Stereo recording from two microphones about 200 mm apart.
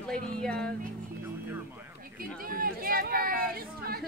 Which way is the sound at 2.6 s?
45° right (ahead or behind).